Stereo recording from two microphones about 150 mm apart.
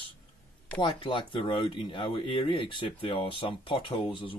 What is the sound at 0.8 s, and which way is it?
Speech, 35° left (ahead or behind).